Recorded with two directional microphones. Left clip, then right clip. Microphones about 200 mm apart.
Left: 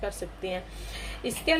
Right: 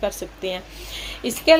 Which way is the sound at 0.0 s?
40° right (ahead or behind).